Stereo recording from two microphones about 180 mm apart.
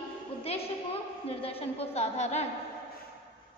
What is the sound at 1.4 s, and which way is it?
A woman's voice, 30° left (ahead or behind).